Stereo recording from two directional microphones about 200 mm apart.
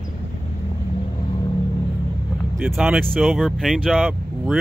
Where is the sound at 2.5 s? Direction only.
5° right (ahead or behind).